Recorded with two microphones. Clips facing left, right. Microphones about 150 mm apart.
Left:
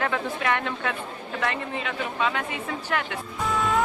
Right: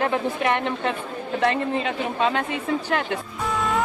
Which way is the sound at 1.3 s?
35° right (ahead or behind).